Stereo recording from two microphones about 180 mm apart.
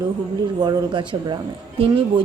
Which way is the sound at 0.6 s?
25° right (ahead or behind).